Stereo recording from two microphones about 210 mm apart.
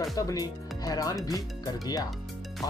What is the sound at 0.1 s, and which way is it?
Speech, 15° left (ahead or behind).